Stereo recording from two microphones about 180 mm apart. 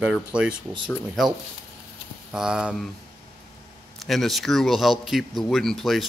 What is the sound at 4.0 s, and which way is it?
Speech, centre (ahead or behind).